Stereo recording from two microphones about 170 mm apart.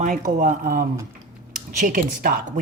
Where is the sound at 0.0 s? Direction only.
45° right (ahead or behind).